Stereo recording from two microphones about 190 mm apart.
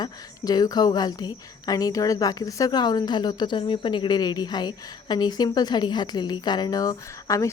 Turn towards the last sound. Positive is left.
turn(degrees=15)  # may be behind; listen again after turning